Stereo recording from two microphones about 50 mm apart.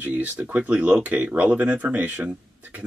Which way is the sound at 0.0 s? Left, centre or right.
Right.